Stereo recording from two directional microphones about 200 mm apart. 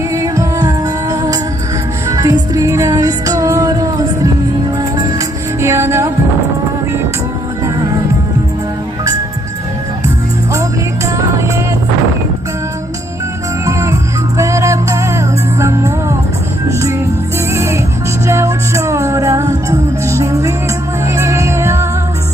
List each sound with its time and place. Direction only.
0.1 s music: 15° right (ahead or behind)
5.5 s music: 15° right (ahead or behind)
13.7 s music: 15° right (ahead or behind)
17.5 s music: 10° right (ahead or behind)